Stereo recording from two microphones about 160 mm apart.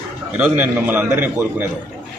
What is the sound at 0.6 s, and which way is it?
A man's voice, 10° right (ahead or behind).